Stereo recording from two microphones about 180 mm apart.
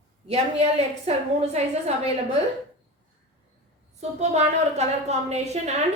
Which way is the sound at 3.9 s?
40° right (ahead or behind).